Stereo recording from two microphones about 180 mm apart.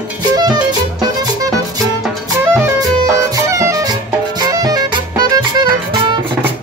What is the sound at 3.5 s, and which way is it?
Music, 15° right (ahead or behind).